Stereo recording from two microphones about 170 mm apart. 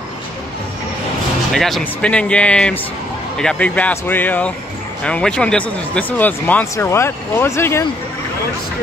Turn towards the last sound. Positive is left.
turn(degrees=15)  # may be behind; listen again after turning